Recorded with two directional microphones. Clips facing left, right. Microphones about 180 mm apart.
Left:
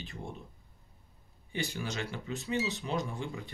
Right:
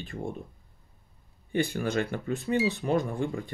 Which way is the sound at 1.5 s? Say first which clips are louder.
Right 9 dB; 55° right (ahead or behind).